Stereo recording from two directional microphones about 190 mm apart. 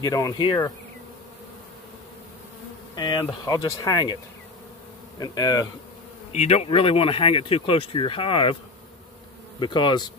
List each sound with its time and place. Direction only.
0.0 s speech: 20° left (ahead or behind)
3.0 s speech: 25° left (ahead or behind)
5.2 s speech: 20° left (ahead or behind)
6.3 s speech: 35° left (ahead or behind)
9.6 s speech: 25° left (ahead or behind)